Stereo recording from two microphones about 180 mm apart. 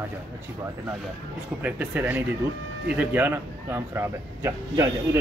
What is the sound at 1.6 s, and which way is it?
Speech, 10° right (ahead or behind).